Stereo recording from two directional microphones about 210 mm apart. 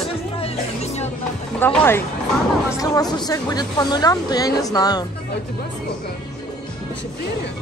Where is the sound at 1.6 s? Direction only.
10° left (ahead or behind).